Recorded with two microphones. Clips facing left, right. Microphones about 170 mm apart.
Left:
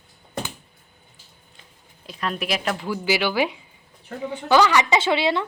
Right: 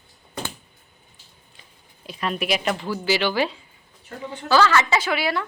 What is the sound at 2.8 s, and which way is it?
A woman's voice, 10° left (ahead or behind).